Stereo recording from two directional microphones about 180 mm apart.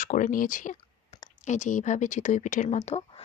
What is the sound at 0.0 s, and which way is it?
Speech, 45° left (ahead or behind).